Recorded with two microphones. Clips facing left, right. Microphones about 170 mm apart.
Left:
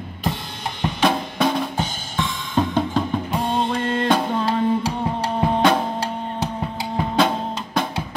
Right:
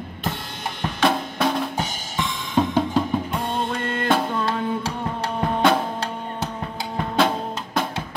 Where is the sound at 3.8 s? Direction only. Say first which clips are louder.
Left 2 dB; 30° left (ahead or behind).